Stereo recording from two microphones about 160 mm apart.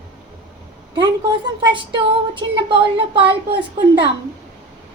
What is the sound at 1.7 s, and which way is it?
Speech, 30° right (ahead or behind).